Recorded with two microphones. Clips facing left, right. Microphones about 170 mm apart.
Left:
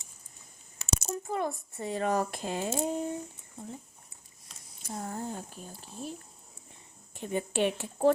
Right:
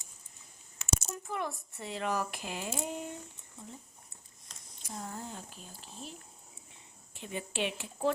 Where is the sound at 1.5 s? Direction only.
50° left (ahead or behind).